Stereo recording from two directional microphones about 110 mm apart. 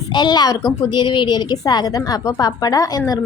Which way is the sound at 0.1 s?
40° left (ahead or behind).